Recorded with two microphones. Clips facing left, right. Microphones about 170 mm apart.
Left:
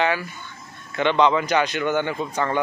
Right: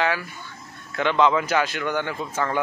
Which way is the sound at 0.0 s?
Centre (ahead or behind).